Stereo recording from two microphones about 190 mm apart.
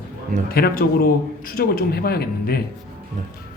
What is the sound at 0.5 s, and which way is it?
A man's voice, 50° left (ahead or behind).